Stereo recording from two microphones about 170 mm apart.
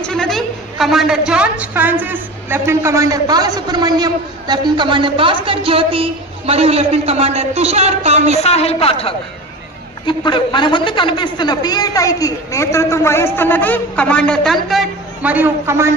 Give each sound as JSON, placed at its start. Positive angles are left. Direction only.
{"t": 0.0, "sound": "a woman's voice", "side_deg": 5}
{"t": 8.4, "sound": "a woman's voice", "side_deg": 40}